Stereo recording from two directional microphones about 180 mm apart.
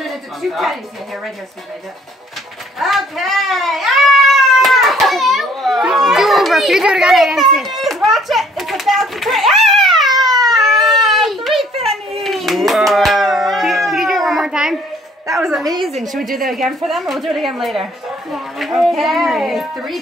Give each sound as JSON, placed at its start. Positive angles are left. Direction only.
{"t": 0.1, "sound": "music", "side_deg": 0}
{"t": 2.8, "sound": "cat", "side_deg": 0}
{"t": 10.5, "sound": "baby cry", "side_deg": 0}
{"t": 12.2, "sound": "a sound", "side_deg": 0}
{"t": 15.3, "sound": "a woman's voice", "side_deg": 0}
{"t": 16.3, "sound": "speech", "side_deg": -50}
{"t": 16.5, "sound": "a child's voice", "side_deg": 0}